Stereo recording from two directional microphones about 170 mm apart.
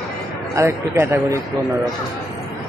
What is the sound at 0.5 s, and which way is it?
Speech, 15° right (ahead or behind).